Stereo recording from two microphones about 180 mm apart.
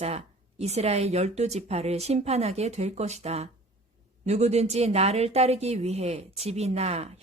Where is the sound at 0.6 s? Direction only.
35° right (ahead or behind).